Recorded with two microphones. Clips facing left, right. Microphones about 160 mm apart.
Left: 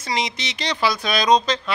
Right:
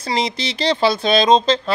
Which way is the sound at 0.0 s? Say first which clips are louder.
Right 4 dB; 30° right (ahead or behind).